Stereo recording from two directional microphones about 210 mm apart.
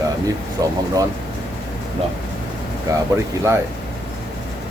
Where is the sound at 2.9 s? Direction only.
15° right (ahead or behind).